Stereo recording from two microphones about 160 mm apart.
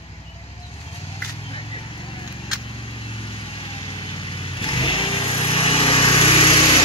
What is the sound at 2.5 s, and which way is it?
Vehicle, 35° left (ahead or behind).